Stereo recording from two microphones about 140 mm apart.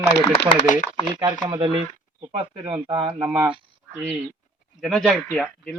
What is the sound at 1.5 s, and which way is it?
Speech, 35° right (ahead or behind).